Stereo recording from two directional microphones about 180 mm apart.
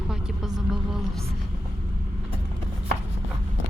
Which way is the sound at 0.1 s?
Centre (ahead or behind).